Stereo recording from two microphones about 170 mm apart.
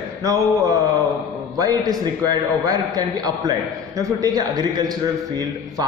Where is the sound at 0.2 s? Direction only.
20° right (ahead or behind).